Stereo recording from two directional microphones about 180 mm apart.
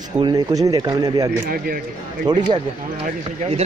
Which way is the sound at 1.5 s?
55° right (ahead or behind).